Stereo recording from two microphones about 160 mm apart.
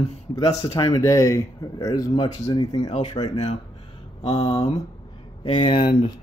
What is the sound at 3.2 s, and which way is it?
Speech, 45° left (ahead or behind).